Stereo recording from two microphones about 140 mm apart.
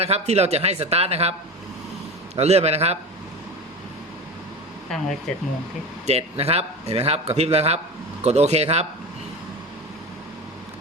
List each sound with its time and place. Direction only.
0.0 s a man's voice: 50° right (ahead or behind)
2.3 s a man's voice: 50° right (ahead or behind)
6.1 s a man's voice: 50° right (ahead or behind)